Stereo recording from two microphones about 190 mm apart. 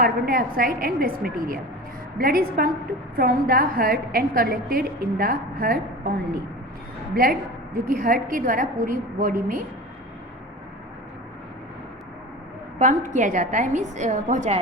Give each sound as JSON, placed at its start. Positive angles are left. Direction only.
{"t": 0.0, "sound": "a woman's voice", "side_deg": -50}
{"t": 7.1, "sound": "a woman's voice", "side_deg": -50}
{"t": 12.8, "sound": "a woman's voice", "side_deg": -40}